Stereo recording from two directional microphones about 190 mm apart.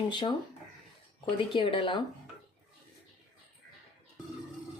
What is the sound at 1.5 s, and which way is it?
Speech, 25° left (ahead or behind).